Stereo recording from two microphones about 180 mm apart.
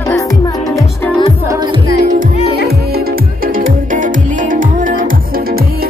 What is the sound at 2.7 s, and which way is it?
Music, 55° right (ahead or behind).